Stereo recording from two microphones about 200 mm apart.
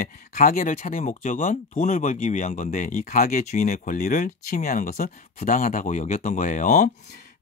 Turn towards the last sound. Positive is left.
turn(degrees=40)  # may be behind; listen again after turning